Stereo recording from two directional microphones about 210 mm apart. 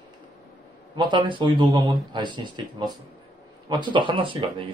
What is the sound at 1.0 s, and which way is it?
Speech, 20° right (ahead or behind).